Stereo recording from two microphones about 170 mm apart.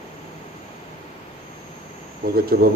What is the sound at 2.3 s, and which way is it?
Speech, 60° right (ahead or behind).